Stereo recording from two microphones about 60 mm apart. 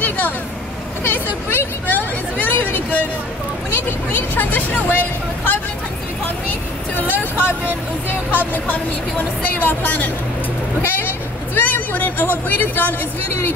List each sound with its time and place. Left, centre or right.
1.0 s speech: left
7.0 s speech: left